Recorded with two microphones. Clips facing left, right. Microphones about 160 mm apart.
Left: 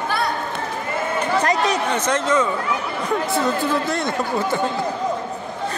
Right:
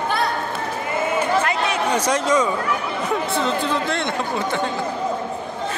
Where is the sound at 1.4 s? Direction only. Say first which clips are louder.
Left 3 dB; 40° left (ahead or behind).